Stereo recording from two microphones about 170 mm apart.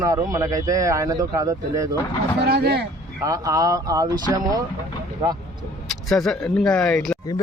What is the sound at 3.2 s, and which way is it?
Speech, 20° right (ahead or behind).